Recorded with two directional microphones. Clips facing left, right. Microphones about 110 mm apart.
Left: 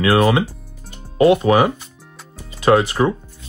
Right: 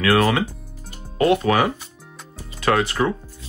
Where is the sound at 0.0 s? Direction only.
20° left (ahead or behind).